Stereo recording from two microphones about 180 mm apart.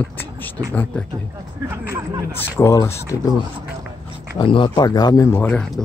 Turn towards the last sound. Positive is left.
turn(degrees=5)  # may be behind; listen again after turning